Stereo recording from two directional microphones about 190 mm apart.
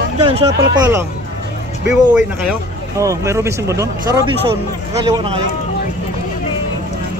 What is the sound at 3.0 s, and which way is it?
Speech, 15° right (ahead or behind).